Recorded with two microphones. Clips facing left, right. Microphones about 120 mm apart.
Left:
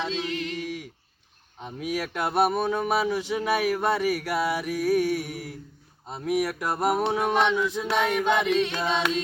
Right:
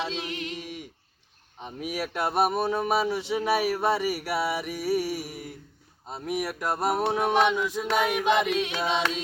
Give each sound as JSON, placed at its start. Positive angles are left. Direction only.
{"t": 0.0, "sound": "music", "side_deg": -15}
{"t": 1.5, "sound": "speech", "side_deg": -5}
{"t": 7.9, "sound": "music", "side_deg": -5}